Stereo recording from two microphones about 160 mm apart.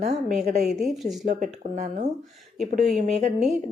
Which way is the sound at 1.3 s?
50° right (ahead or behind).